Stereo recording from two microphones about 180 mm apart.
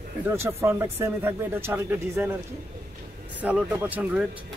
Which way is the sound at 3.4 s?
10° right (ahead or behind).